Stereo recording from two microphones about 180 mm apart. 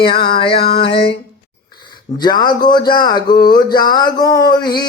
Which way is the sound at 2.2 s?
25° left (ahead or behind).